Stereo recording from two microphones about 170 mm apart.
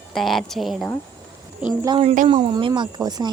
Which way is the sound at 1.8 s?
30° right (ahead or behind).